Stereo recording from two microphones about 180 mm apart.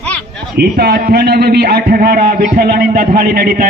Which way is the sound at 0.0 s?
5° left (ahead or behind).